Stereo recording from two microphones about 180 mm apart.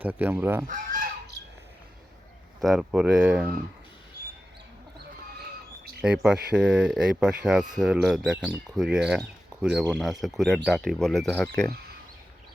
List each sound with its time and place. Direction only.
0.0 s fowl: 10° right (ahead or behind)
0.7 s goose: 50° right (ahead or behind)
2.6 s speech: centre (ahead or behind)
6.0 s speech: 5° right (ahead or behind)